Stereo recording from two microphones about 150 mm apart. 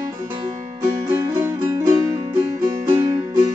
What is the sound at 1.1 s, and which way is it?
Music, 20° right (ahead or behind).